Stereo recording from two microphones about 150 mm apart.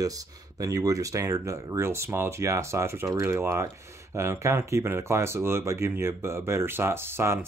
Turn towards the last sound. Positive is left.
turn(degrees=-15)  # may be behind; listen again after turning